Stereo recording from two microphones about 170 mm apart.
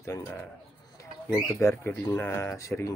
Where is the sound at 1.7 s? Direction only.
10° left (ahead or behind).